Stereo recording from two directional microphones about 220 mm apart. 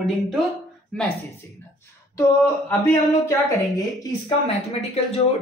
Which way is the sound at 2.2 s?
15° left (ahead or behind).